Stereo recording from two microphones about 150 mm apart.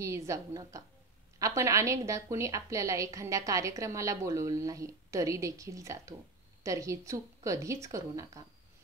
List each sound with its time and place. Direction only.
0.0 s a woman's voice: 20° right (ahead or behind)